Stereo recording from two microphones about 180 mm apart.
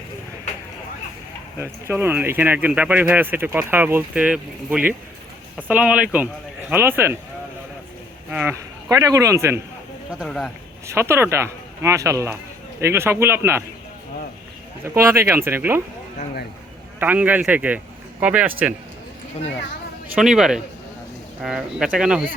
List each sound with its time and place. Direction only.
1.9 s speech: 10° right (ahead or behind)
8.3 s speech: 5° right (ahead or behind)
8.9 s speech: 20° right (ahead or behind)
10.2 s a man's voice: centre (ahead or behind)
10.8 s speech: 15° right (ahead or behind)
14.8 s speech: 15° right (ahead or behind)
17.0 s speech: 10° right (ahead or behind)
20.1 s a man's voice: 5° right (ahead or behind)